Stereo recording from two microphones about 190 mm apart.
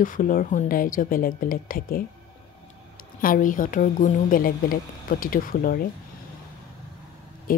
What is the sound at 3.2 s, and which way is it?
Speech, 45° left (ahead or behind).